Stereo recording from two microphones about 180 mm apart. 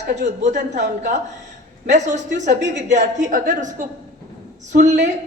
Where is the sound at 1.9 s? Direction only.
40° right (ahead or behind).